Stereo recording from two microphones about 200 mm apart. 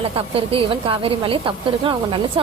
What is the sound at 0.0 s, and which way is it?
A woman's voice, 30° right (ahead or behind).